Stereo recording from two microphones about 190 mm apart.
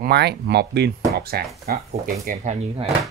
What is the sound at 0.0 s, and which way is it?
Speech, 60° right (ahead or behind).